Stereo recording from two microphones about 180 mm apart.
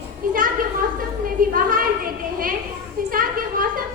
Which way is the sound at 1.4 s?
50° right (ahead or behind).